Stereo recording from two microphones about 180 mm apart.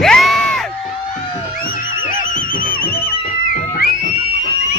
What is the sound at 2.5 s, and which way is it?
Music, 50° left (ahead or behind).